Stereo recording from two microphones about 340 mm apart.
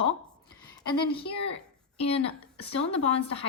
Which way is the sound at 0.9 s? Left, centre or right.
Centre.